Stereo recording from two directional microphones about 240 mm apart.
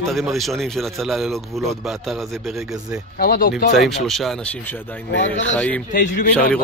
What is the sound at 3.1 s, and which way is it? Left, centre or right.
Speech, left.